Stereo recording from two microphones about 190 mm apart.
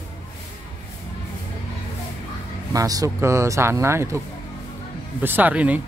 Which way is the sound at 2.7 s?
20° right (ahead or behind).